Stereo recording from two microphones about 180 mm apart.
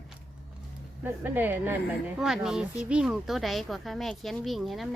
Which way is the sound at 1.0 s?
10° right (ahead or behind).